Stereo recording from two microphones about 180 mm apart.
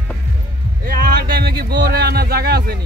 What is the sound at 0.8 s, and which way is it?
Speech, 55° right (ahead or behind).